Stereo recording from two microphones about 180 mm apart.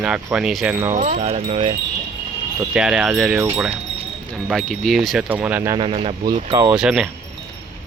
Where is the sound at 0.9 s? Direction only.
45° right (ahead or behind).